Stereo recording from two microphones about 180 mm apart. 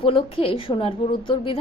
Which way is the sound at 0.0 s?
30° left (ahead or behind).